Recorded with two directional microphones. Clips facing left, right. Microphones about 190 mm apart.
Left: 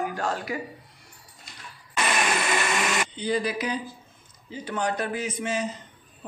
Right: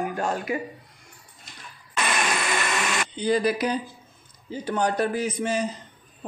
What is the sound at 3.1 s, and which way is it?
Speech, 45° right (ahead or behind).